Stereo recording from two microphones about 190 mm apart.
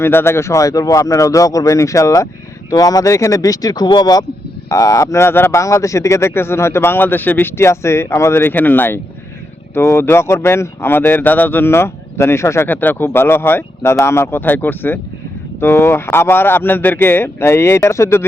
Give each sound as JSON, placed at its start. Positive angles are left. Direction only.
{"t": 0.0, "sound": "speech", "side_deg": 10}